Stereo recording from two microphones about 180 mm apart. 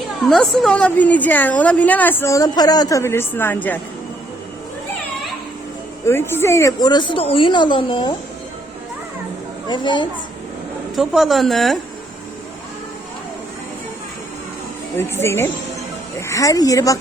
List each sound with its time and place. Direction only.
0.3 s a woman's voice: centre (ahead or behind)
6.1 s speech: 15° left (ahead or behind)
9.6 s speech: 25° left (ahead or behind)
10.9 s a woman's voice: centre (ahead or behind)
14.9 s a woman's voice: 15° left (ahead or behind)